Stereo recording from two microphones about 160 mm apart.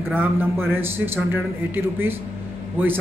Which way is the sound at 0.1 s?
10° right (ahead or behind).